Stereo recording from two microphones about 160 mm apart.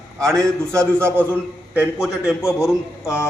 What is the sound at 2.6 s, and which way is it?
Speech, 15° left (ahead or behind).